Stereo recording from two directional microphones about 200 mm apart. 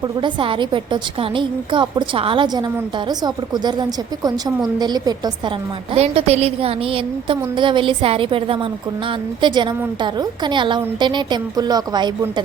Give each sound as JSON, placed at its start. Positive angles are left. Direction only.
{"t": 0.2, "sound": "a woman's voice", "side_deg": -25}
{"t": 5.9, "sound": "a woman's voice", "side_deg": -30}